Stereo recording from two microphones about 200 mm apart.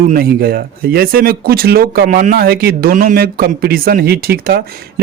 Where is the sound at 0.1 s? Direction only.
50° right (ahead or behind).